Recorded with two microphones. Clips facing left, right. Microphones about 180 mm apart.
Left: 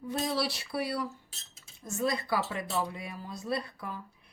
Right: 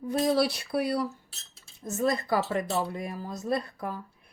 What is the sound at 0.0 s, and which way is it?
Speech, 50° right (ahead or behind).